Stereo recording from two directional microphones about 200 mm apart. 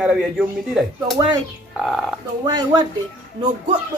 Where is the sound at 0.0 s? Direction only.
5° right (ahead or behind).